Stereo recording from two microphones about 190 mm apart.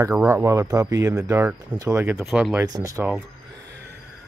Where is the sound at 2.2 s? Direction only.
Centre (ahead or behind).